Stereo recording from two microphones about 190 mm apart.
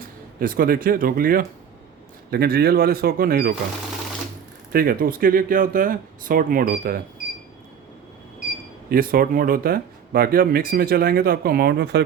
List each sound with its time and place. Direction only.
0.3 s speech: 50° right (ahead or behind)
4.7 s speech: 50° right (ahead or behind)
8.9 s speech: 50° right (ahead or behind)